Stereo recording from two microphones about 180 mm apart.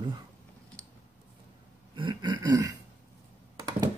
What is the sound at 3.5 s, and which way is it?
Computer keyboard, 25° right (ahead or behind).